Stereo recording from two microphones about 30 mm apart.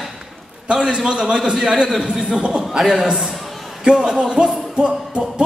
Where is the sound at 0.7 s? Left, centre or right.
Right.